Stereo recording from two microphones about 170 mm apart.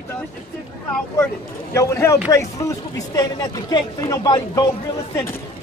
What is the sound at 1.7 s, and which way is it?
A man's voice, 15° left (ahead or behind).